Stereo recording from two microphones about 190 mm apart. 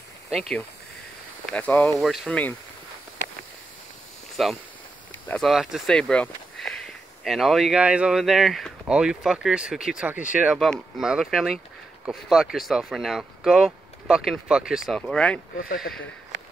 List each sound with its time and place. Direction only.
1.4 s speech: 10° left (ahead or behind)
4.4 s speech: centre (ahead or behind)
15.5 s speech: 50° left (ahead or behind)